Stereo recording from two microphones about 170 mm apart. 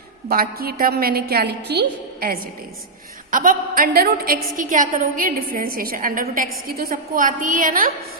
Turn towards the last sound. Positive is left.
turn(degrees=-55)  # may be behind; listen again after turning